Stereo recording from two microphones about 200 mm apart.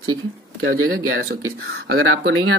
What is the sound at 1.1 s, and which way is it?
Speech, 50° right (ahead or behind).